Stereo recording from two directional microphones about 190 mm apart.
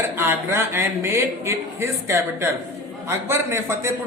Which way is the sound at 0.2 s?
10° right (ahead or behind).